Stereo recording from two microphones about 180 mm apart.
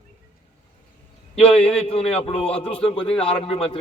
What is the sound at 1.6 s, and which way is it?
Speech, 35° left (ahead or behind).